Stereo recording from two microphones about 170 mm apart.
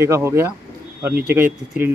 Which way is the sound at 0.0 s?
15° right (ahead or behind).